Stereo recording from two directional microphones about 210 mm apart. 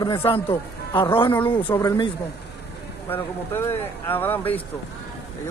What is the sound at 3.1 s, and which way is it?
Speech, 10° left (ahead or behind).